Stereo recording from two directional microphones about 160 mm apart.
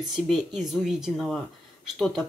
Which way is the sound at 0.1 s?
Centre (ahead or behind).